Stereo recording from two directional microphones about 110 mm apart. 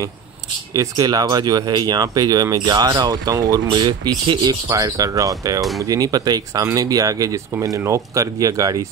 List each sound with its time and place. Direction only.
0.7 s speech: 35° right (ahead or behind)